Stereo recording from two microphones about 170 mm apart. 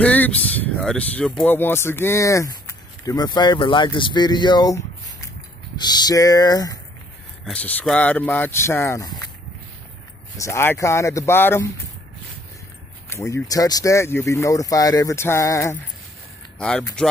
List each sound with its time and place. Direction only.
0.0 s a sound: 10° left (ahead or behind)
0.7 s speech: 5° left (ahead or behind)
7.4 s speech: 5° left (ahead or behind)
10.3 s speech: 15° left (ahead or behind)
13.1 s speech: 15° left (ahead or behind)
16.5 s speech: 5° left (ahead or behind)